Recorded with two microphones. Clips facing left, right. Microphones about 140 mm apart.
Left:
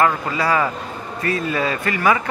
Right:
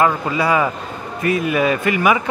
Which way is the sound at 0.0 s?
15° right (ahead or behind).